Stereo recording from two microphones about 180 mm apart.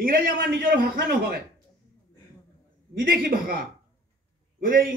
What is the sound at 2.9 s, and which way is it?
Speech, 50° right (ahead or behind).